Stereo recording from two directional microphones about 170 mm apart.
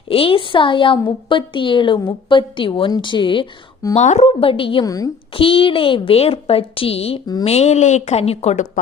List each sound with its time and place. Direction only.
0.1 s a woman's voice: 35° left (ahead or behind)
3.9 s a woman's voice: 40° left (ahead or behind); by 5.1 s 20° left (ahead or behind)
5.3 s a woman's voice: 30° left (ahead or behind)